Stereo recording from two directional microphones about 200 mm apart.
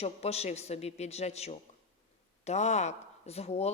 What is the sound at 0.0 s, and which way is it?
A woman's voice, 30° left (ahead or behind).